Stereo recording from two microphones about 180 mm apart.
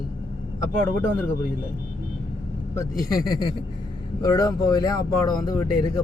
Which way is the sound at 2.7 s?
20° left (ahead or behind).